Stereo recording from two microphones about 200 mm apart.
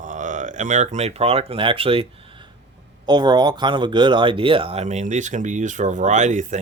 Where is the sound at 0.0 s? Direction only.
40° right (ahead or behind).